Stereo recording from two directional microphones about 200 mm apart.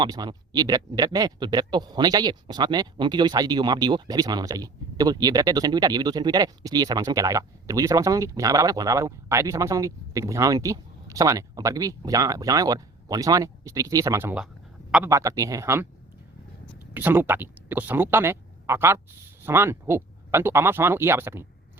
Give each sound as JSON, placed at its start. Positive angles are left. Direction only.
{"t": 0.0, "sound": "speech", "side_deg": -20}
{"t": 16.9, "sound": "speech", "side_deg": -10}